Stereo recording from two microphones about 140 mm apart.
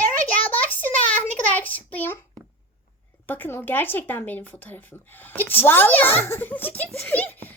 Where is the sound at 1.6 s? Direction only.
10° left (ahead or behind).